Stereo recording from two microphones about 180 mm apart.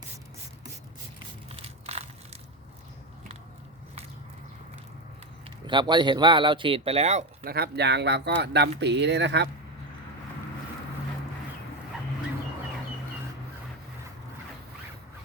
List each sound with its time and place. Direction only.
1.5 s crushing: 30° right (ahead or behind)
5.6 s speech: 25° right (ahead or behind)
7.4 s speech: 60° right (ahead or behind)